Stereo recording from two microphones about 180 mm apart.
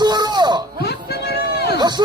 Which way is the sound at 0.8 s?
65° left (ahead or behind).